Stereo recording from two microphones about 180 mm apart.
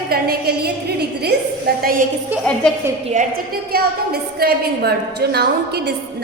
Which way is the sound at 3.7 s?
60° right (ahead or behind).